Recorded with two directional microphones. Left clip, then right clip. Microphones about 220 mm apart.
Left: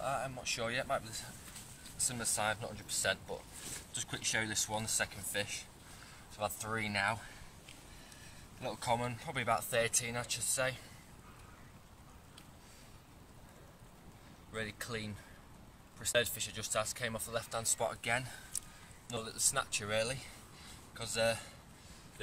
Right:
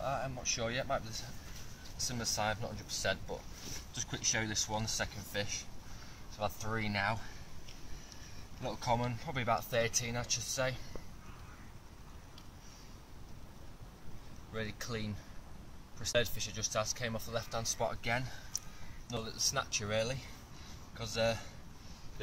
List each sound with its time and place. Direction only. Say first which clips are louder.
0.0 s speech: even; 5° left (ahead or behind)
8.5 s speech: right 1 dB; 5° left (ahead or behind)
14.5 s speech: even; 5° left (ahead or behind)